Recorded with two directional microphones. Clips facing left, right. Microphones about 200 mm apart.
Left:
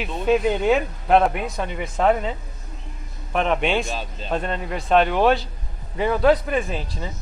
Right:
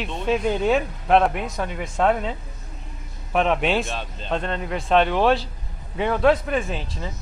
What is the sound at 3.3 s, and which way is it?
A man's voice, centre (ahead or behind).